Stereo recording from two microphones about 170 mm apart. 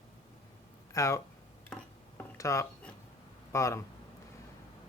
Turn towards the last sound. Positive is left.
turn(degrees=15)  # may be behind; listen again after turning